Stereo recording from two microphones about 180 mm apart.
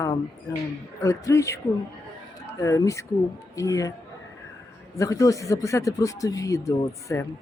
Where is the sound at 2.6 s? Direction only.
15° left (ahead or behind).